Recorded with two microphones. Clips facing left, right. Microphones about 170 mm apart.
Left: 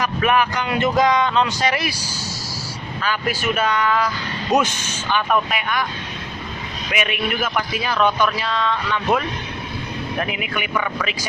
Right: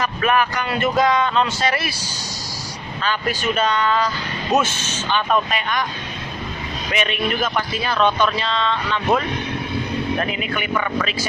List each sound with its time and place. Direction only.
0.0 s a man's voice: 15° left (ahead or behind)
6.9 s a man's voice: 10° left (ahead or behind)
10.2 s a man's voice: 15° left (ahead or behind)